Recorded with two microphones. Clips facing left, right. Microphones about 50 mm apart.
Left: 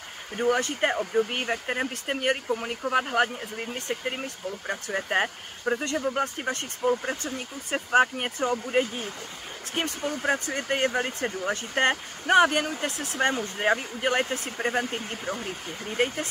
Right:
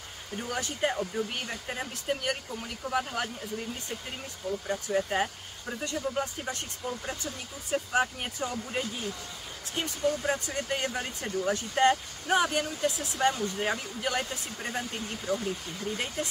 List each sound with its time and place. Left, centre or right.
0.4 s speech: left
13.3 s speech: left